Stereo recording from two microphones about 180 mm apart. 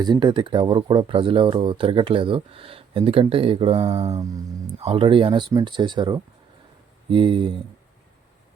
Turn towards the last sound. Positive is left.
turn(degrees=-30)  # may be behind; listen again after turning